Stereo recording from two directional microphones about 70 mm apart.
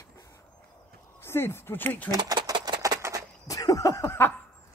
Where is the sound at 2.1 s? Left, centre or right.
Right.